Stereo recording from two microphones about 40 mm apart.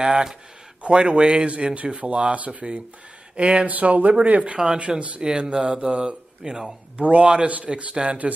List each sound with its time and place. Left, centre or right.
0.0 s speech: centre
0.8 s speech: right
3.7 s speech: right
5.2 s speech: right